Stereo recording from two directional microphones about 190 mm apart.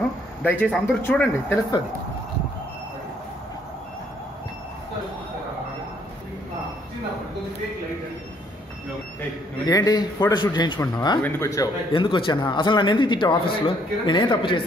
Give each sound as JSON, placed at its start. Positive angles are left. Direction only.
{"t": 0.4, "sound": "speech", "side_deg": 10}
{"t": 9.7, "sound": "a man's voice", "side_deg": 20}